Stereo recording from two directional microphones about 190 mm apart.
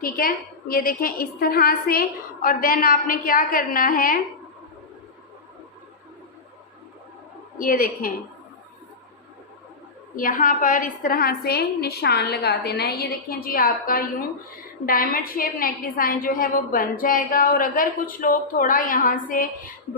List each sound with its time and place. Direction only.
0.0 s a woman's voice: 50° left (ahead or behind)
7.6 s a woman's voice: 45° left (ahead or behind)
10.2 s a woman's voice: 45° left (ahead or behind)